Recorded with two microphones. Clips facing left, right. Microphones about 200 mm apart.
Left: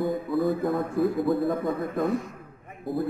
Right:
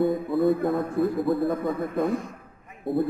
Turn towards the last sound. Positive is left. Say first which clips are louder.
# right 4 dB
turn(degrees=0)  # may be behind; listen again after turning